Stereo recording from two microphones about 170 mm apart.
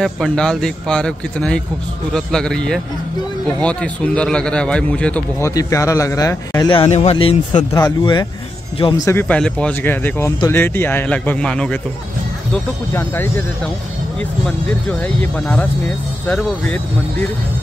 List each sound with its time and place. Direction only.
0.0 s a man's voice: 5° left (ahead or behind)
5.4 s a man's voice: 20° left (ahead or behind)
9.0 s a man's voice: 15° left (ahead or behind)
12.9 s a man's voice: 15° left (ahead or behind)